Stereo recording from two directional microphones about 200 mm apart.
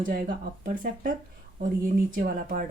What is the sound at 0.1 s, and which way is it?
Speech, 45° right (ahead or behind).